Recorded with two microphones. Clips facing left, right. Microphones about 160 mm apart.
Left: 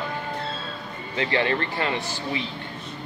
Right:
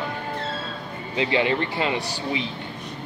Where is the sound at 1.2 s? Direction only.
15° right (ahead or behind).